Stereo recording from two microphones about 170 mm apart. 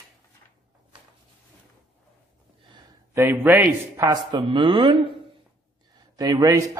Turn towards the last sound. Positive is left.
turn(degrees=-20)  # may be behind; listen again after turning